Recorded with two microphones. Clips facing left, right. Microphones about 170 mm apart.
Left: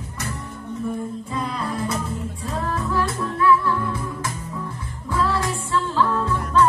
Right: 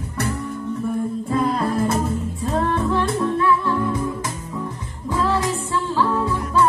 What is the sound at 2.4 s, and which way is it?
Music, 35° right (ahead or behind).